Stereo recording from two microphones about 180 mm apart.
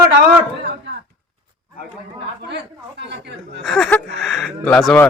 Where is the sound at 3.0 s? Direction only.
70° right (ahead or behind).